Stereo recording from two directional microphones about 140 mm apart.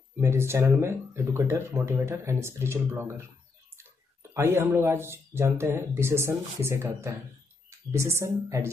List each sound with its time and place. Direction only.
0.2 s speech: 20° right (ahead or behind)
4.3 s speech: 20° right (ahead or behind)